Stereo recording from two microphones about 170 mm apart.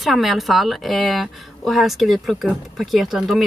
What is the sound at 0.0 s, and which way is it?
A woman's voice, centre (ahead or behind).